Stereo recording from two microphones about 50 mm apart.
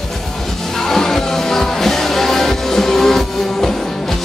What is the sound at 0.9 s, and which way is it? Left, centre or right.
Music, centre.